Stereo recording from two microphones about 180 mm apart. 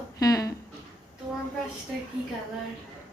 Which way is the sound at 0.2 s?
20° left (ahead or behind).